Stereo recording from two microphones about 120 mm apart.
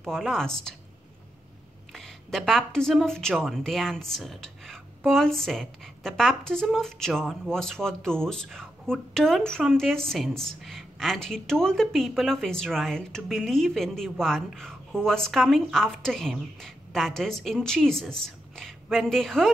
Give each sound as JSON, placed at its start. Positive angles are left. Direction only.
{"t": 0.0, "sound": "a woman's voice", "side_deg": 5}
{"t": 1.9, "sound": "a woman's voice", "side_deg": 5}